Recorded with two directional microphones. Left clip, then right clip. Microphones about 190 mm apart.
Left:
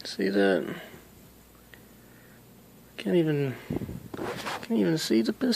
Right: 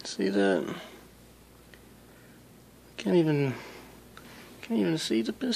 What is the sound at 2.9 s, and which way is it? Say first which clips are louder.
Speech: even; 5° right (ahead or behind).